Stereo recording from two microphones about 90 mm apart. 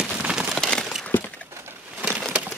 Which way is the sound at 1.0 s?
20° left (ahead or behind).